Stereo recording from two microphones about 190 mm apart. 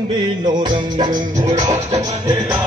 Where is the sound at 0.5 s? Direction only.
20° right (ahead or behind).